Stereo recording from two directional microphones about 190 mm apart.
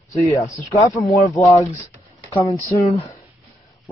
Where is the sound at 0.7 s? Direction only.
15° left (ahead or behind).